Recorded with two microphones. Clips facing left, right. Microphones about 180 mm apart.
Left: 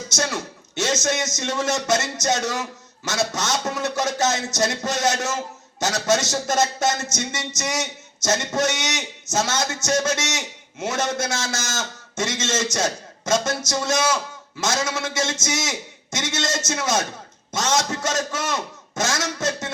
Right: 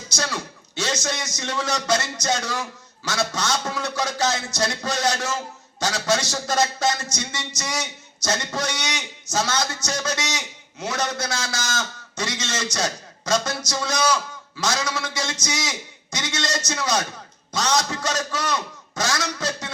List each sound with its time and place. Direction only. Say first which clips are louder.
0.1 s a man's voice: left 1 dB; 20° left (ahead or behind)